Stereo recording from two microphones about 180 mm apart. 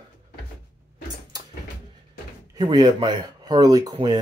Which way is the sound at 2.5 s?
25° right (ahead or behind).